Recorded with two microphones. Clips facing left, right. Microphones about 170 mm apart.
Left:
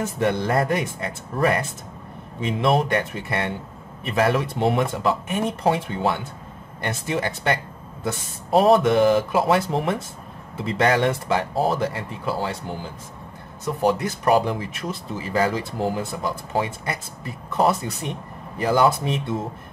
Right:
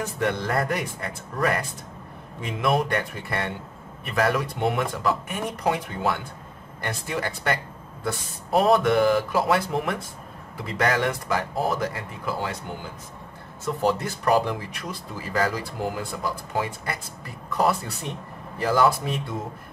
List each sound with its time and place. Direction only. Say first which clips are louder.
0.0 s speech: left 4 dB; 25° left (ahead or behind)
13.7 s speech: left 3 dB; 15° left (ahead or behind)